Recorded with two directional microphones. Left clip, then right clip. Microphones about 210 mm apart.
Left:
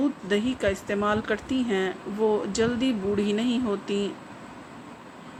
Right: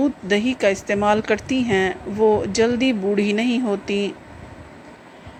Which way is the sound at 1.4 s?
15° left (ahead or behind).